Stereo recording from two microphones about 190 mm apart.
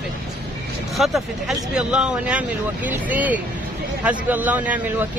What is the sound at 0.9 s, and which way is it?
A woman's voice, centre (ahead or behind).